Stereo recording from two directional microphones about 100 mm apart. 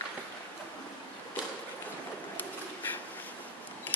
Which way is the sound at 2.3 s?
20° left (ahead or behind).